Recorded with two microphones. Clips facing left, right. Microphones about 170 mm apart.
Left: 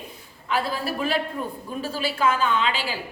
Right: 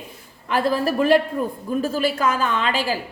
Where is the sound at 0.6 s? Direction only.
45° right (ahead or behind).